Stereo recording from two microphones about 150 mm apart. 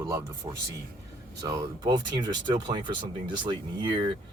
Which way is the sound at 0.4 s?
30° right (ahead or behind).